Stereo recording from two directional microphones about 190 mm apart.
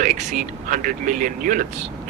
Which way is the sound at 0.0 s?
40° right (ahead or behind).